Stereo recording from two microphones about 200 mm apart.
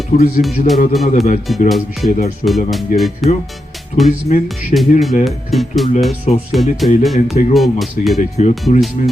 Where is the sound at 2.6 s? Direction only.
Centre (ahead or behind).